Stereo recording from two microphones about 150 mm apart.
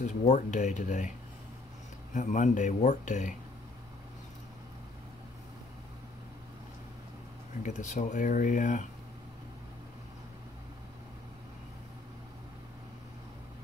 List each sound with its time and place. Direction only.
0.0 s speech: 50° left (ahead or behind)
2.1 s speech: 55° left (ahead or behind)
7.6 s speech: 55° left (ahead or behind)